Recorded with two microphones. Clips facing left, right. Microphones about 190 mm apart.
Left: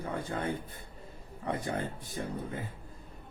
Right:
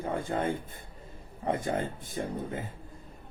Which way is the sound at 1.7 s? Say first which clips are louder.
Right 3 dB; 20° right (ahead or behind).